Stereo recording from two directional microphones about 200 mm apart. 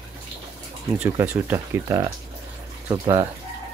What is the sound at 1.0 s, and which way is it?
Speech, 10° right (ahead or behind).